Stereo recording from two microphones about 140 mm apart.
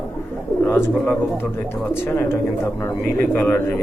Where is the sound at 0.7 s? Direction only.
15° left (ahead or behind).